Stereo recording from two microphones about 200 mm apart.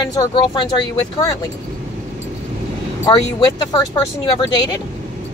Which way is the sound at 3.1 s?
20° left (ahead or behind).